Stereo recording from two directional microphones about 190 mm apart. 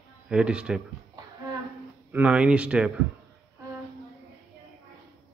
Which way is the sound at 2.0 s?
10° right (ahead or behind).